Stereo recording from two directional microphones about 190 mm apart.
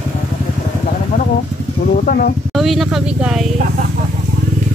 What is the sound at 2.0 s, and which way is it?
Speech, 50° left (ahead or behind).